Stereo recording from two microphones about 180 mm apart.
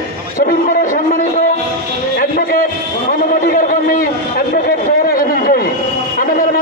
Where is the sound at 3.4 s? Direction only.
50° left (ahead or behind).